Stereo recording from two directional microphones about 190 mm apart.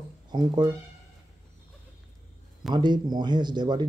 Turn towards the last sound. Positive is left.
turn(degrees=-25)  # may be behind; listen again after turning